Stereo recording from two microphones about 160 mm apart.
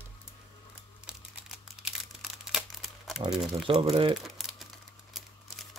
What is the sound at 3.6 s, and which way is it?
Speech, 35° right (ahead or behind).